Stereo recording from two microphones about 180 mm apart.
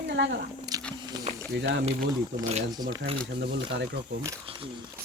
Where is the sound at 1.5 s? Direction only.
80° right.